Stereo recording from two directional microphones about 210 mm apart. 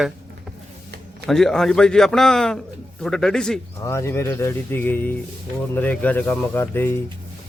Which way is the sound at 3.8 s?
15° left (ahead or behind).